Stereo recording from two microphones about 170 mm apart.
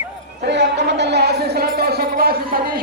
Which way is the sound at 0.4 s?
85° right.